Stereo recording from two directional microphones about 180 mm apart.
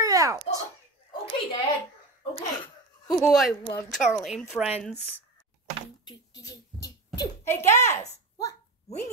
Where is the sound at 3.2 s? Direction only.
Centre (ahead or behind).